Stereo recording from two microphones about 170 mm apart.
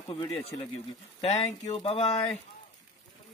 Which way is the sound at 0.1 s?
25° left (ahead or behind).